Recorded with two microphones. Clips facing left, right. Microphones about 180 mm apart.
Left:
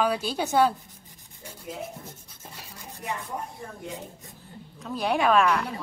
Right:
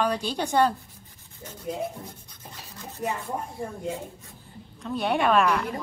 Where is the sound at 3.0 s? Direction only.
40° right (ahead or behind).